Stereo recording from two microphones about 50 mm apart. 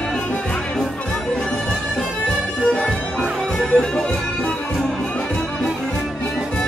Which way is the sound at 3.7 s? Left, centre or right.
Centre.